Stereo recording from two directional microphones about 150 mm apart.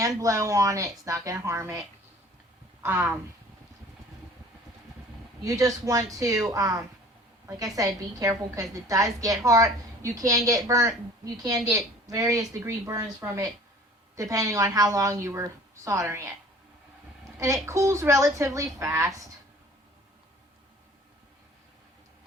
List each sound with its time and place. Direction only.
0.0 s a woman's voice: 20° right (ahead or behind)
2.8 s speech: 15° right (ahead or behind)
5.4 s a woman's voice: 20° right (ahead or behind)
17.3 s a woman's voice: 20° right (ahead or behind)